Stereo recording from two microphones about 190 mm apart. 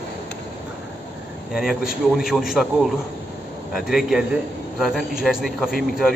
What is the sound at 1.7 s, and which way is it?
Speech, 50° left (ahead or behind).